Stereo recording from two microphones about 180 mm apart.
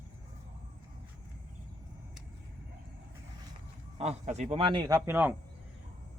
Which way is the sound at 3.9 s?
35° right (ahead or behind).